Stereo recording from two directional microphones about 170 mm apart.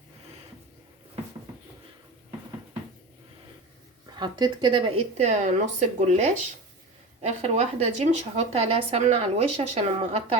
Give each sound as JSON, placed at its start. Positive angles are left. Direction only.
{"t": 4.2, "sound": "a woman's voice", "side_deg": -25}